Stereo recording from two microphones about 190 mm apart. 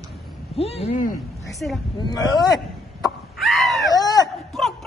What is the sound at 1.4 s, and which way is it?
Speech, centre (ahead or behind).